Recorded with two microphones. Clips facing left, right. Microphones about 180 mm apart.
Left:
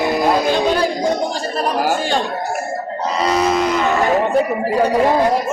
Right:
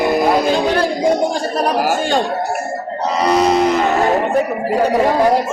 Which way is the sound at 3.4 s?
35° right (ahead or behind).